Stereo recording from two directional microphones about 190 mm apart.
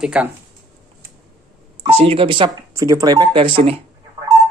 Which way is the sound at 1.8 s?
30° right (ahead or behind).